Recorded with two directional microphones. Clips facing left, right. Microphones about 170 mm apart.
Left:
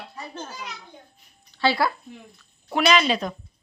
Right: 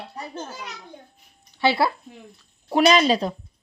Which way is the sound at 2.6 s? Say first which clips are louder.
Right 3 dB; 35° right (ahead or behind).